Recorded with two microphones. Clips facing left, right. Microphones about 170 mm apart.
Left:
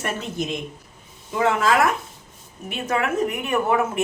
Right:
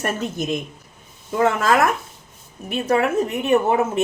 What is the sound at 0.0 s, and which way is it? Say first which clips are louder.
Speech: right 3 dB; 45° right (ahead or behind).